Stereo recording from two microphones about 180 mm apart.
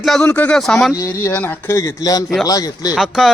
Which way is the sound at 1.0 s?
15° left (ahead or behind).